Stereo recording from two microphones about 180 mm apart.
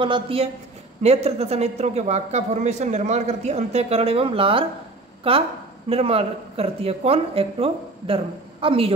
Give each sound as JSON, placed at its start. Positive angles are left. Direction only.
{"t": 0.0, "sound": "a man's voice", "side_deg": -30}